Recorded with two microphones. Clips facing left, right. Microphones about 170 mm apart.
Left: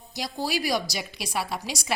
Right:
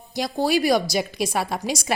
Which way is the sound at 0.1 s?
55° right (ahead or behind).